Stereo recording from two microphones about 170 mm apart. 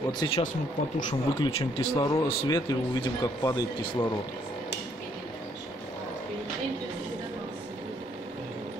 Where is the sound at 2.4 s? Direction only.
25° left (ahead or behind).